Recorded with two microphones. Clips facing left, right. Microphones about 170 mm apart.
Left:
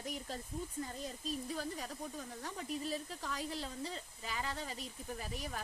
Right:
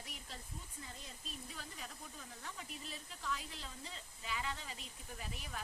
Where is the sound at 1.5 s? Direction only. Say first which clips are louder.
Left 10 dB; 40° left (ahead or behind).